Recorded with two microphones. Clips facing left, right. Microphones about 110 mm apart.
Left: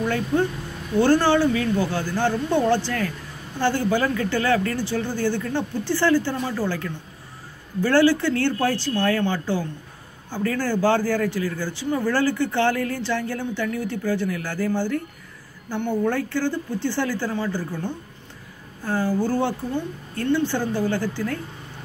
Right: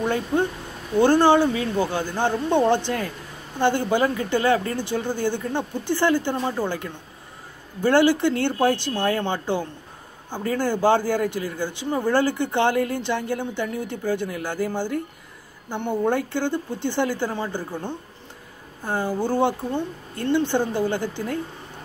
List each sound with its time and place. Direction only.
0.0 s speech: 20° right (ahead or behind)